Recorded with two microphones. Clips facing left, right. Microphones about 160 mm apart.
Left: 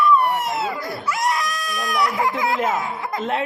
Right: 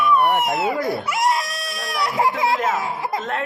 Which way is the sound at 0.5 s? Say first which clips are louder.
Right 5 dB; 20° right (ahead or behind).